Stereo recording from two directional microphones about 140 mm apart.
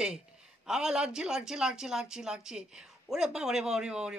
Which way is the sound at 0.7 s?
5° right (ahead or behind).